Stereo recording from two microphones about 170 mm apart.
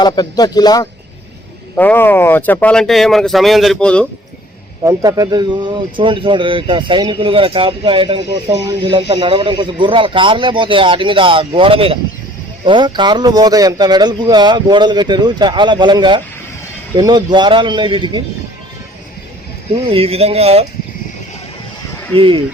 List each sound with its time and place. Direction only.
0.0 s speech: 25° left (ahead or behind)
1.7 s speech: 10° left (ahead or behind)
4.8 s speech: 20° right (ahead or behind)
19.9 s speech: 35° right (ahead or behind)
22.1 s speech: 30° right (ahead or behind)